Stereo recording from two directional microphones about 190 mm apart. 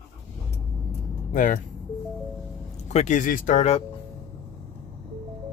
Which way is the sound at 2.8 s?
40° left (ahead or behind).